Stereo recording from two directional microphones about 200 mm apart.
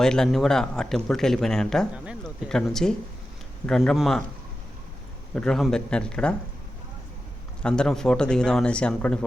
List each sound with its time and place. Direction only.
0.0 s a man's voice: 5° left (ahead or behind)
5.3 s a man's voice: 5° left (ahead or behind)
7.6 s a man's voice: 5° left (ahead or behind)